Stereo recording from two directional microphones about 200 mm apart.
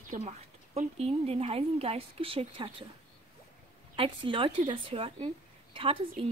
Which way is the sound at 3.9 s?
25° right (ahead or behind).